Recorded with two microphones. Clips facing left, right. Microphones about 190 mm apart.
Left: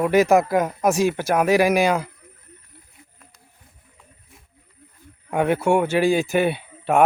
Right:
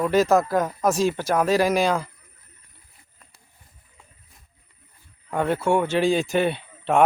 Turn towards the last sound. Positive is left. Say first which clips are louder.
# left 2 dB
turn(degrees=10)  # may be behind; listen again after turning